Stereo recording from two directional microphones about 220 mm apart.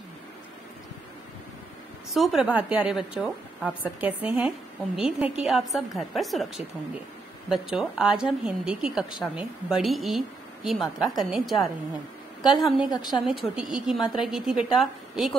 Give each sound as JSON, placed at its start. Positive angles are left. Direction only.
{"t": 2.1, "sound": "a woman's voice", "side_deg": 0}
{"t": 12.5, "sound": "a woman's voice", "side_deg": 0}
{"t": 12.9, "sound": "a woman's voice", "side_deg": 20}
{"t": 13.3, "sound": "a woman's voice", "side_deg": 0}